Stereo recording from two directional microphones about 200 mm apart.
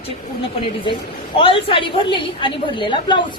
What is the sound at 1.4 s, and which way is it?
A woman's voice, 25° left (ahead or behind).